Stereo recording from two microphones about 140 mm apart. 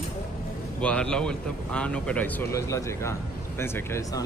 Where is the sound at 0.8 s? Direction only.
5° left (ahead or behind).